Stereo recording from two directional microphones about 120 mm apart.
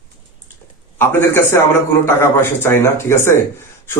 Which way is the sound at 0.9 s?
20° left (ahead or behind).